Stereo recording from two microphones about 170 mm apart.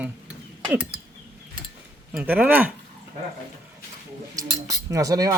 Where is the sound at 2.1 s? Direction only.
10° right (ahead or behind).